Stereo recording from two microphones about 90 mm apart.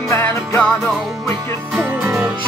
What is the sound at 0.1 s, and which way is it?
Music, 35° left (ahead or behind).